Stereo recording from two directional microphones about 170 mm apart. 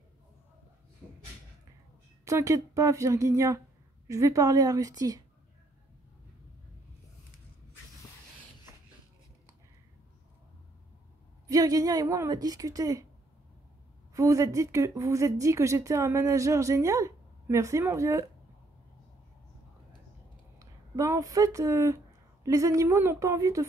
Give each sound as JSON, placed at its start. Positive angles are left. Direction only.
{"t": 2.2, "sound": "speech", "side_deg": -20}
{"t": 11.4, "sound": "speech", "side_deg": -20}
{"t": 14.1, "sound": "a woman's voice", "side_deg": -20}
{"t": 20.5, "sound": "speech", "side_deg": -20}